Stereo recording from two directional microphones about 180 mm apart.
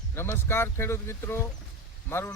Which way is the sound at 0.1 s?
15° left (ahead or behind).